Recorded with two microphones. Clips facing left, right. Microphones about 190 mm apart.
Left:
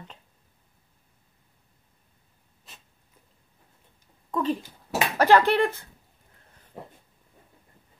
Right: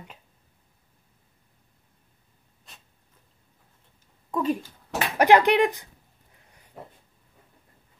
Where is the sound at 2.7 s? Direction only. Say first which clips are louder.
Left 1 dB; 5° left (ahead or behind).